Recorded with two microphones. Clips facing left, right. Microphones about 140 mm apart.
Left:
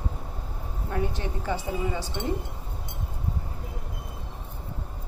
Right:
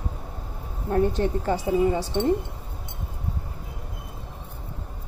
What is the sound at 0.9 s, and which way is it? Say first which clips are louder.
A woman's voice: right 8 dB; 45° right (ahead or behind).